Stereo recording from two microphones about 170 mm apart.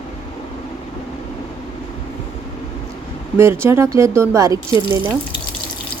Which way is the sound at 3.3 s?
15° right (ahead or behind).